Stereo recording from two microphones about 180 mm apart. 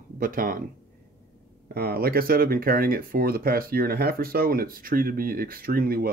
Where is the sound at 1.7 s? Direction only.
55° right (ahead or behind).